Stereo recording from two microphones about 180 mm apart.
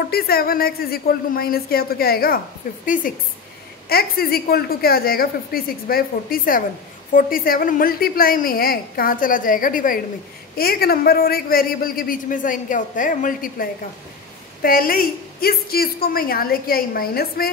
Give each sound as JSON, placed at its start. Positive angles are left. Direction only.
{"t": 0.0, "sound": "a man's voice", "side_deg": 60}